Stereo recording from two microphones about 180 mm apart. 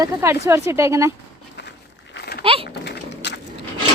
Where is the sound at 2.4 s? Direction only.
30° right (ahead or behind).